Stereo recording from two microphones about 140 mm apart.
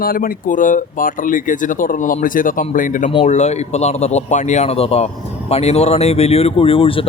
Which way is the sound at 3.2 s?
55° left (ahead or behind).